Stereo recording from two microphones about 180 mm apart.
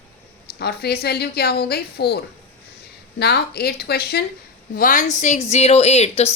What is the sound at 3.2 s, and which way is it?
A woman's voice, 60° left (ahead or behind).